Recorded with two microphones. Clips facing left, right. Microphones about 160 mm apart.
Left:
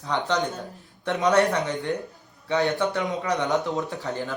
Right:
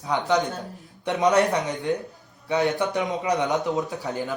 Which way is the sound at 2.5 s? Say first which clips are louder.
Even; 15° right (ahead or behind).